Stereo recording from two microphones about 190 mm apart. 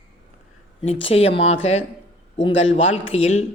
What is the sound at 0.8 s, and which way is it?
Speech, 30° left (ahead or behind).